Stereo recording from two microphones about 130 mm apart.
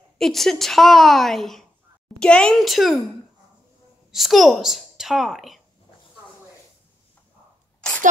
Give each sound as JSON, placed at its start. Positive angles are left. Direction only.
{"t": 0.2, "sound": "a woman's voice", "side_deg": 0}
{"t": 4.1, "sound": "a woman's voice", "side_deg": 0}